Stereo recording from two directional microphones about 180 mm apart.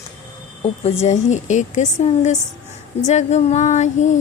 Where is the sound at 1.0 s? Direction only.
40° left (ahead or behind).